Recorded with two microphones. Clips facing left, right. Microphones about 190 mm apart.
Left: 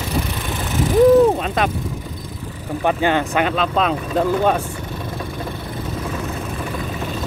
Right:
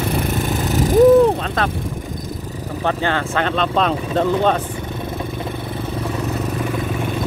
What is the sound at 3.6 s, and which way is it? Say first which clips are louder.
Speech: right 1 dB; 5° left (ahead or behind).